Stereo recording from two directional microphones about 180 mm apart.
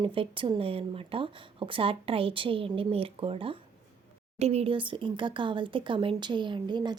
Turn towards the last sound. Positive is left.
turn(degrees=-25)  # may be behind; listen again after turning